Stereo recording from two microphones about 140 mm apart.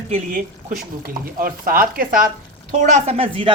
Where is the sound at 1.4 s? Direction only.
90° right.